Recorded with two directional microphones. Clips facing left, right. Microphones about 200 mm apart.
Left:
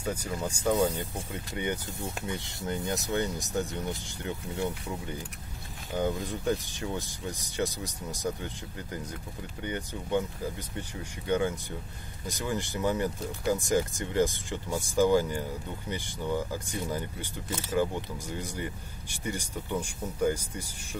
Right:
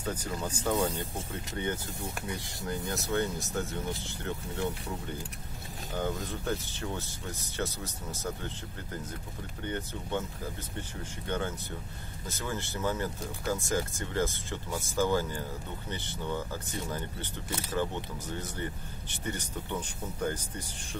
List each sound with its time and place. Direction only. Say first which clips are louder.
0.0 s speech: left 2 dB; 10° left (ahead or behind)
9.7 s speech: left 3 dB; 15° left (ahead or behind)
11.2 s speech: left 6 dB; 15° left (ahead or behind)
17.7 s speech: left 4 dB; 10° left (ahead or behind)